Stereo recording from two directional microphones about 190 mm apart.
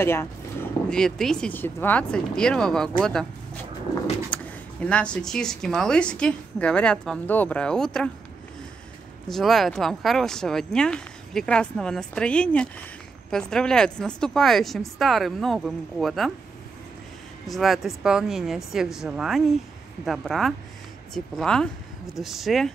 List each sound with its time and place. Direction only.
0.0 s speech: 15° left (ahead or behind)
4.3 s speech: 5° left (ahead or behind)
9.3 s speech: centre (ahead or behind)
17.5 s speech: centre (ahead or behind)